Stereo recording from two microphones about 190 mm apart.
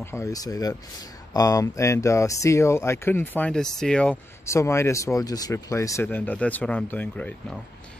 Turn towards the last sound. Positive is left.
turn(degrees=10)  # may be behind; listen again after turning